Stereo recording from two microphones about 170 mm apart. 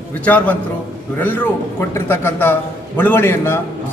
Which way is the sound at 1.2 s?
10° left (ahead or behind).